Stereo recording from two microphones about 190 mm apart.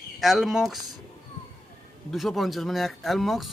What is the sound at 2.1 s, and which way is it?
Speech, centre (ahead or behind).